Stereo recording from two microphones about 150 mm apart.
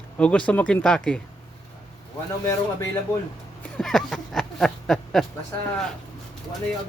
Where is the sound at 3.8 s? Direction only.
5° left (ahead or behind).